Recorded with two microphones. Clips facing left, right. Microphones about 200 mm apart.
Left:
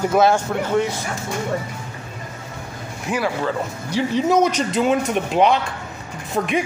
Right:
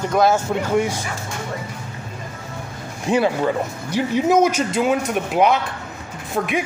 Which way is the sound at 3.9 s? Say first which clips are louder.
Right 1 dB; 10° right (ahead or behind).